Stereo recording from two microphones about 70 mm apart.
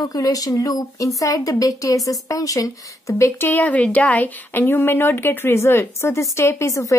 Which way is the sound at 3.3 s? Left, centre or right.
Left.